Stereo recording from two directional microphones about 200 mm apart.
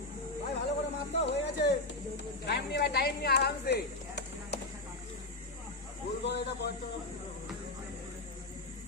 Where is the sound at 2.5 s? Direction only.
55° left (ahead or behind).